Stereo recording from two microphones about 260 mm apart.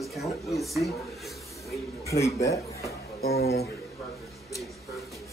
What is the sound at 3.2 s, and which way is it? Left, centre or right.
Speech, left.